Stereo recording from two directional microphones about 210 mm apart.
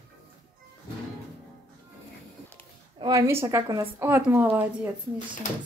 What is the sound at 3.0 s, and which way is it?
A woman's voice, 15° right (ahead or behind).